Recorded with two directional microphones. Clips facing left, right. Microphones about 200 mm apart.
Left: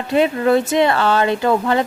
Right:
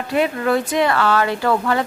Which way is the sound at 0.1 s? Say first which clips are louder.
Left 4 dB; 25° left (ahead or behind).